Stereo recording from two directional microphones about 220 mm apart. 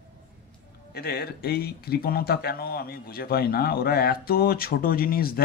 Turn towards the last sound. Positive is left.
turn(degrees=40)  # may be behind; listen again after turning